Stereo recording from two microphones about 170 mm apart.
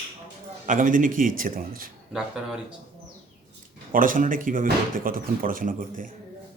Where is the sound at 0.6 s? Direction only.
50° right (ahead or behind).